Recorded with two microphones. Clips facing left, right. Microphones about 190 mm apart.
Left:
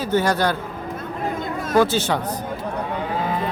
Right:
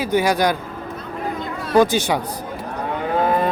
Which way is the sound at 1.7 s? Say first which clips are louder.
Right 2 dB; 15° right (ahead or behind).